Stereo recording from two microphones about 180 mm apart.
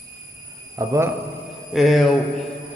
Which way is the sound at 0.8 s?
15° right (ahead or behind).